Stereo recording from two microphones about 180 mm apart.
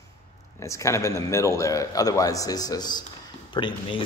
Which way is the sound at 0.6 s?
15° left (ahead or behind).